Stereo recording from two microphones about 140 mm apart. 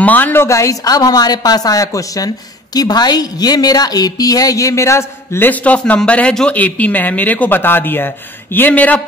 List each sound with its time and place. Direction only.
0.0 s a woman's voice: 15° left (ahead or behind)